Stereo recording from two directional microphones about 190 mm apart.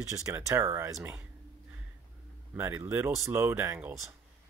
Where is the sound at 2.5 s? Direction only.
10° right (ahead or behind).